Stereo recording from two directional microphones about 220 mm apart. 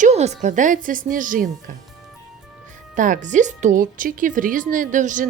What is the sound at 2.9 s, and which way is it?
Speech, 35° right (ahead or behind).